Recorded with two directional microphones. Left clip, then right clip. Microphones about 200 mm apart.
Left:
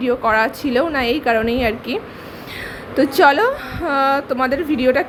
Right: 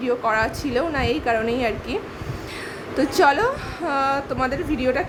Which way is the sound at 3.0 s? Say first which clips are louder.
Left 5 dB; 15° left (ahead or behind).